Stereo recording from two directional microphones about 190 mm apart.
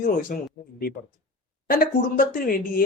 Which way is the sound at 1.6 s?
50° left (ahead or behind).